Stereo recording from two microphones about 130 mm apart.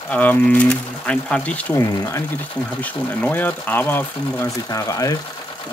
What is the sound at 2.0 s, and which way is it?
Speech, 25° left (ahead or behind).